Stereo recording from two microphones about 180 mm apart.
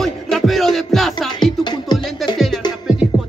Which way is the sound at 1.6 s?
25° left (ahead or behind).